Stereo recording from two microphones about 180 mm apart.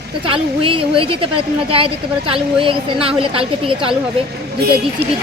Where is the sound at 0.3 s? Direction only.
30° right (ahead or behind).